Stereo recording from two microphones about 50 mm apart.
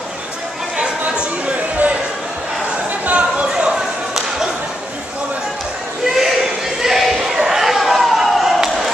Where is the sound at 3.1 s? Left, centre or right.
Right.